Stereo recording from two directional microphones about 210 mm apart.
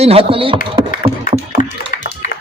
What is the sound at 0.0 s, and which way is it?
Speech, 25° right (ahead or behind).